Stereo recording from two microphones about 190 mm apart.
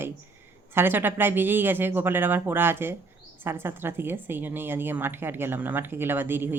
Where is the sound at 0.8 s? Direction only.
10° right (ahead or behind).